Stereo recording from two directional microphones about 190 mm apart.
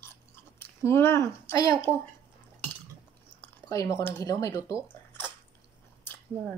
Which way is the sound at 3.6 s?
20° left (ahead or behind).